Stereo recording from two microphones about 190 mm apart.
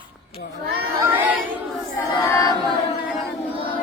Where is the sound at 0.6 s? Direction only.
55° right (ahead or behind).